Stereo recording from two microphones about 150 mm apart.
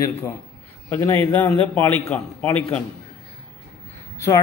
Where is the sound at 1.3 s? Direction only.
10° left (ahead or behind).